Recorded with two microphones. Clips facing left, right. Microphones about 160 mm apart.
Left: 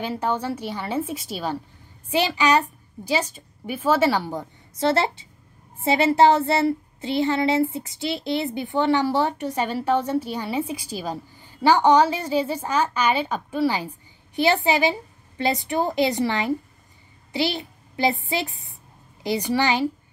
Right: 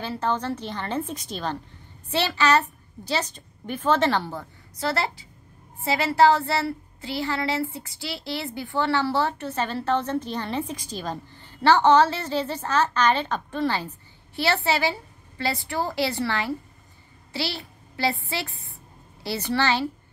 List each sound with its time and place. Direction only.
0.0 s a woman's voice: 15° left (ahead or behind)